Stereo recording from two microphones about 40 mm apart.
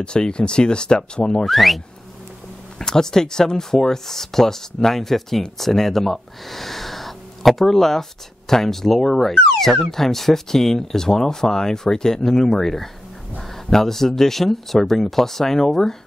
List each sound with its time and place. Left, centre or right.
0.0 s speech: left
1.4 s speech: centre
2.8 s speech: centre